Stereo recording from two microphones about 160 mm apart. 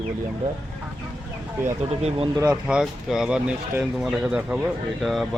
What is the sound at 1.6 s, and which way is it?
Speech, 40° right (ahead or behind).